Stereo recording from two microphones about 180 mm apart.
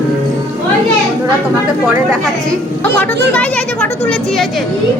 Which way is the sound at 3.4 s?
5° left (ahead or behind).